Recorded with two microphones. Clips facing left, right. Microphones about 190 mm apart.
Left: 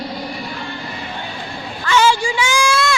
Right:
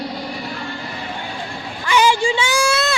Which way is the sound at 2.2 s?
25° right (ahead or behind).